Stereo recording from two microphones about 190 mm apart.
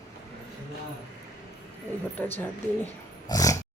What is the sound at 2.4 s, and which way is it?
Speech, 15° left (ahead or behind).